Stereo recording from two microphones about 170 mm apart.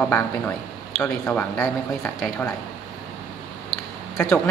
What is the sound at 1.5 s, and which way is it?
Speech, 20° left (ahead or behind).